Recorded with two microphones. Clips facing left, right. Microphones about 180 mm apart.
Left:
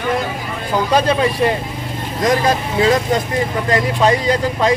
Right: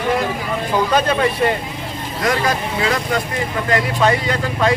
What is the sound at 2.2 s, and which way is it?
Speech, 25° left (ahead or behind).